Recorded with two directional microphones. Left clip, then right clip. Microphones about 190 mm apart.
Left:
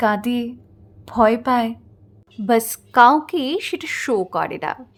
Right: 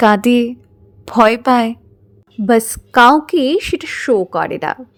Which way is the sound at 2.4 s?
20° right (ahead or behind).